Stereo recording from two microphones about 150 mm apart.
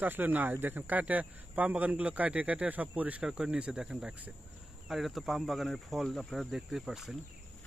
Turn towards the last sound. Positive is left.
turn(degrees=0)  # may be behind; listen again after turning